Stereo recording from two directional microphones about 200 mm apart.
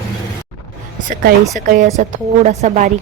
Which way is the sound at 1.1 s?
45° right (ahead or behind).